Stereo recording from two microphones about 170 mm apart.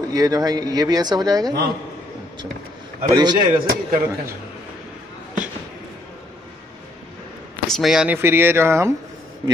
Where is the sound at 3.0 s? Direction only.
25° right (ahead or behind).